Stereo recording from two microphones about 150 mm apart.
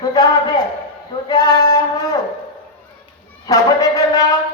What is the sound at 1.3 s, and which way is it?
Music, 30° left (ahead or behind).